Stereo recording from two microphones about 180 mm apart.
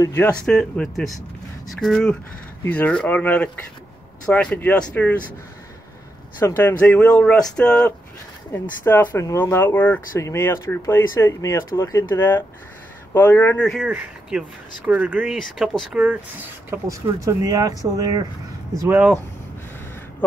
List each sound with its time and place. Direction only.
0.0 s speech: 10° left (ahead or behind)
6.4 s speech: 10° left (ahead or behind)
14.9 s speech: 10° right (ahead or behind)